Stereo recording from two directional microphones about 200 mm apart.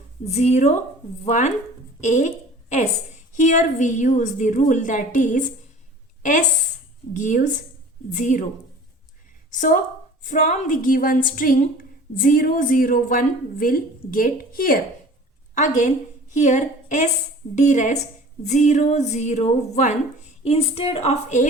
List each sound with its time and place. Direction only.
0.3 s a woman's voice: 35° left (ahead or behind)
7.1 s a woman's voice: 40° left (ahead or behind)
9.5 s a woman's voice: 40° left (ahead or behind)